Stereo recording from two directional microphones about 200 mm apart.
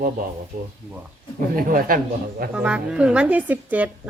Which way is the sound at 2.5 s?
5° right (ahead or behind).